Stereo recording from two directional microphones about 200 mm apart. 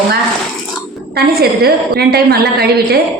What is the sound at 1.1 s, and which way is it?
A woman's voice, 50° right (ahead or behind).